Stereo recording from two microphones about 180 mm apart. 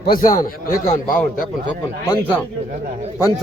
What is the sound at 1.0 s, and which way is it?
Speech, 50° left (ahead or behind).